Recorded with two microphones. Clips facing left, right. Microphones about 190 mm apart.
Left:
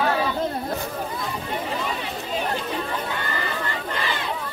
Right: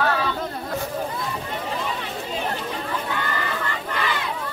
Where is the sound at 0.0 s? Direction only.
15° left (ahead or behind).